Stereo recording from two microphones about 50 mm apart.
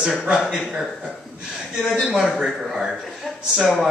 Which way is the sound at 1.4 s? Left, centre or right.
Centre.